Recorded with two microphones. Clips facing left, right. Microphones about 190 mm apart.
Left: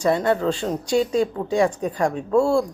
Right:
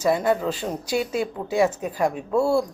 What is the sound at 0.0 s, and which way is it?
Speech, 5° right (ahead or behind).